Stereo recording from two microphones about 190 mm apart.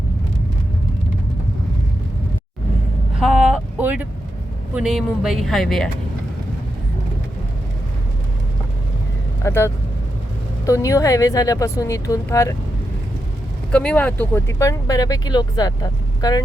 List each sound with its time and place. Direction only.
3.2 s a sound: 5° right (ahead or behind)
4.7 s speech: 5° right (ahead or behind)
9.4 s speech: 15° left (ahead or behind)
13.7 s speech: 5° left (ahead or behind)